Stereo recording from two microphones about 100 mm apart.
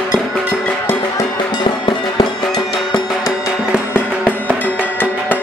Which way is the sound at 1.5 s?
50° left (ahead or behind).